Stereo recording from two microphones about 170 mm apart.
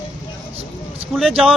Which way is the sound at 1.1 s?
Centre (ahead or behind).